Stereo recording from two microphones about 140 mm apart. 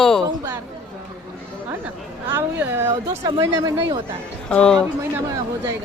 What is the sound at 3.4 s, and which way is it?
Speech, 25° right (ahead or behind).